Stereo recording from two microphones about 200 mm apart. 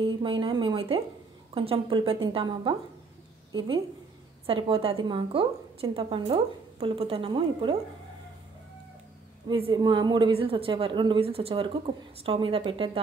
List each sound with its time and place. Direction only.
0.0 s a woman's voice: 25° right (ahead or behind)
4.5 s a woman's voice: 25° right (ahead or behind)
9.5 s a woman's voice: 25° right (ahead or behind)